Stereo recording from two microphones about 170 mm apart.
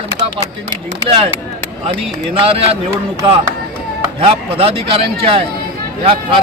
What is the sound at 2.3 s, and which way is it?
Speech, 35° right (ahead or behind).